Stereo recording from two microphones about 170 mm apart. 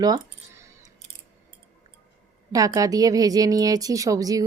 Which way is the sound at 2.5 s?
20° right (ahead or behind).